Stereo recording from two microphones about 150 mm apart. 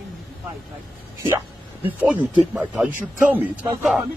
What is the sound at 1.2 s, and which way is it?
Speech, 15° right (ahead or behind).